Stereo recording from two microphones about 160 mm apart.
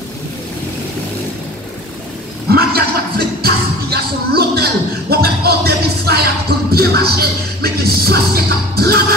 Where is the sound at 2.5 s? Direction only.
75° right (ahead or behind).